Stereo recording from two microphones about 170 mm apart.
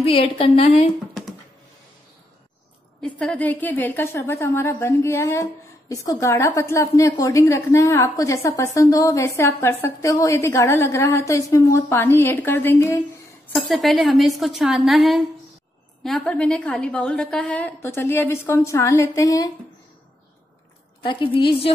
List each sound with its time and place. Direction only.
0.0 s a woman's voice: 30° left (ahead or behind)
3.2 s a woman's voice: 10° left (ahead or behind)
13.6 s a woman's voice: centre (ahead or behind); by 19.5 s 20° left (ahead or behind)
21.0 s a woman's voice: 30° left (ahead or behind)